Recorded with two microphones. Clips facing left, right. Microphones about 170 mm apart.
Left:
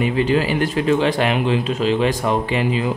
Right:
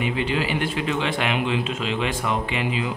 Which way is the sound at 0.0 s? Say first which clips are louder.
Left 6 dB; 40° left (ahead or behind).